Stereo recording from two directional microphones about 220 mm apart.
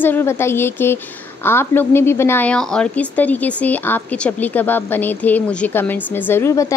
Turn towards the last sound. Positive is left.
turn(degrees=15)  # may be behind; listen again after turning